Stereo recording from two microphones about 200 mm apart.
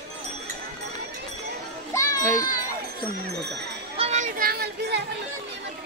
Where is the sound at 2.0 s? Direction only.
15° left (ahead or behind).